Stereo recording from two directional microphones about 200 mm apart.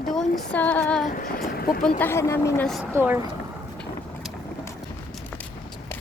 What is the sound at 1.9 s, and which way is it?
Speech, 10° left (ahead or behind).